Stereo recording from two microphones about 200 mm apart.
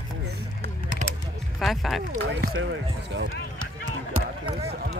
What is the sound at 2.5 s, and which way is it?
Speech, 70° right (ahead or behind).